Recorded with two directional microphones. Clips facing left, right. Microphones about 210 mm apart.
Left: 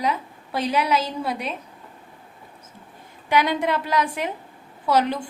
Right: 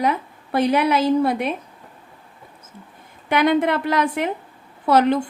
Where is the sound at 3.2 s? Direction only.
55° right (ahead or behind).